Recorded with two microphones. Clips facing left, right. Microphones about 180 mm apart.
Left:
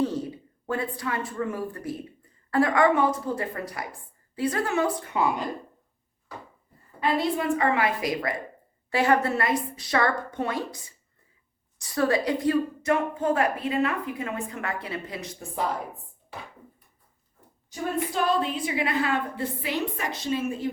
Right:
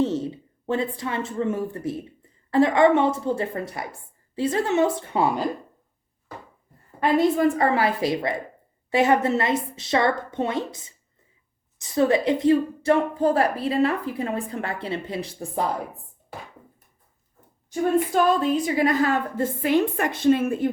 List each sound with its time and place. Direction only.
0.0 s a woman's voice: 25° right (ahead or behind)
7.2 s a woman's voice: 40° right (ahead or behind)
18.1 s a woman's voice: 45° right (ahead or behind)